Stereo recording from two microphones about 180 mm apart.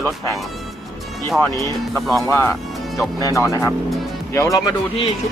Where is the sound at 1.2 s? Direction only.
Centre (ahead or behind).